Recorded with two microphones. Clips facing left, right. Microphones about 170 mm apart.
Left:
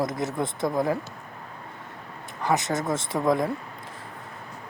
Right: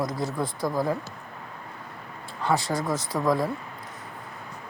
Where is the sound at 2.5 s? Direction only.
20° left (ahead or behind).